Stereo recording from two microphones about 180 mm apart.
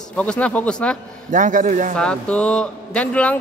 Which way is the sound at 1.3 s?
45° right (ahead or behind).